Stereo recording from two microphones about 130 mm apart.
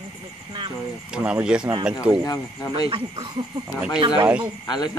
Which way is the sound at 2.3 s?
30° left (ahead or behind).